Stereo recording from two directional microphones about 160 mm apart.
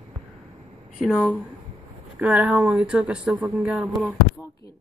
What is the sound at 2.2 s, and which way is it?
Speech, 5° right (ahead or behind).